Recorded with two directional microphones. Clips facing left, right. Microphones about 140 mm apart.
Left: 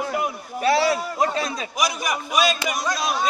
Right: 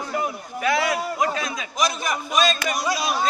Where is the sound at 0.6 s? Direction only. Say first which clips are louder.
Left 3 dB; 30° left (ahead or behind).